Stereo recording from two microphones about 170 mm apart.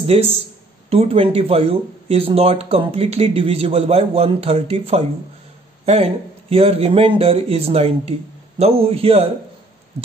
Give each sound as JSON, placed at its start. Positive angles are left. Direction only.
{"t": 0.0, "sound": "speech", "side_deg": -35}